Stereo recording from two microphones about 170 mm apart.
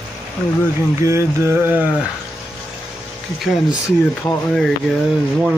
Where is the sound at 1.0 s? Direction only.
15° right (ahead or behind).